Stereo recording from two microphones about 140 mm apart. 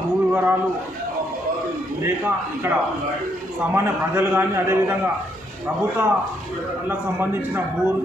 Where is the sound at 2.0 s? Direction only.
20° right (ahead or behind).